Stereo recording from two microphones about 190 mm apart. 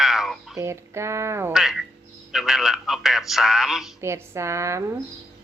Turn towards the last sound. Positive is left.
turn(degrees=-15)  # may be behind; listen again after turning